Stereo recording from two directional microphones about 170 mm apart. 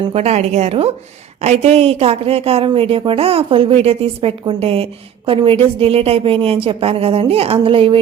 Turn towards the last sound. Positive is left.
turn(degrees=-30)  # may be behind; listen again after turning